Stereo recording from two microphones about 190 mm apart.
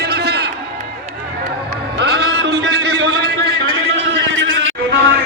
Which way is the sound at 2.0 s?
60° right (ahead or behind).